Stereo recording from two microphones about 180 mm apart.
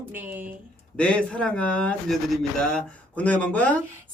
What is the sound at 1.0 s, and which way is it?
Speech, 5° left (ahead or behind).